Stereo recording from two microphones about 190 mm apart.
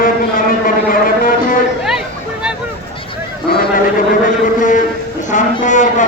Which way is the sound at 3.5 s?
50° left (ahead or behind).